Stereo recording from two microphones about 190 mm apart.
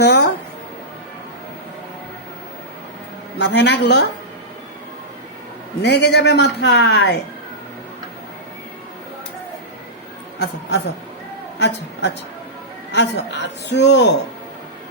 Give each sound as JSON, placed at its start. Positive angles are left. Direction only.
{"t": 0.0, "sound": "a sound", "side_deg": 60}
{"t": 3.3, "sound": "a man's voice", "side_deg": 65}
{"t": 5.8, "sound": "a man's voice", "side_deg": 60}
{"t": 10.3, "sound": "a man's voice", "side_deg": 65}
{"t": 12.9, "sound": "a man's voice", "side_deg": 65}